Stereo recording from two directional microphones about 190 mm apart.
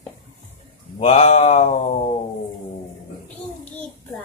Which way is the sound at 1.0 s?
35° left (ahead or behind).